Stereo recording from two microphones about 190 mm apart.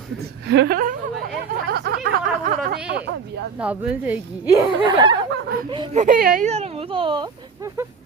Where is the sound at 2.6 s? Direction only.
60° right (ahead or behind).